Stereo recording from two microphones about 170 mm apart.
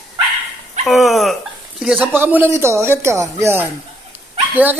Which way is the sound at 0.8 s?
Centre (ahead or behind).